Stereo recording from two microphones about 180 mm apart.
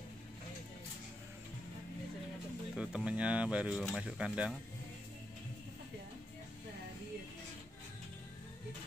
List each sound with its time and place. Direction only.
2.7 s speech: 5° right (ahead or behind)